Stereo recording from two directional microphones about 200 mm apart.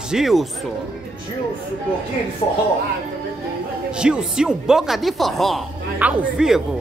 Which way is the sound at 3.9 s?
5° right (ahead or behind).